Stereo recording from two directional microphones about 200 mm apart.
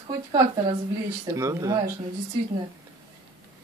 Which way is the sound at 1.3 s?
15° right (ahead or behind).